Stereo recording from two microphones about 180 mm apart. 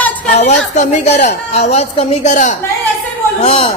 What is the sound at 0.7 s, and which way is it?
A woman's voice, 40° left (ahead or behind).